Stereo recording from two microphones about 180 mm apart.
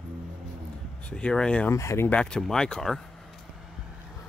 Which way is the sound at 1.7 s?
15° left (ahead or behind).